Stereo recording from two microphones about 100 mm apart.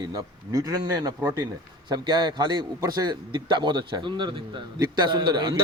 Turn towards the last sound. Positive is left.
turn(degrees=-50)  # may be behind; listen again after turning